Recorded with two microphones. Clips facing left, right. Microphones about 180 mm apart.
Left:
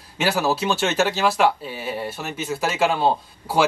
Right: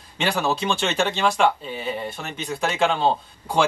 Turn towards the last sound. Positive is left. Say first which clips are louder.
# left 1 dB
turn(degrees=5)  # may be behind; listen again after turning